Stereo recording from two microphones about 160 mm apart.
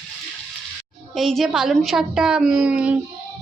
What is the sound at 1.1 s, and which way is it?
A woman's voice, centre (ahead or behind).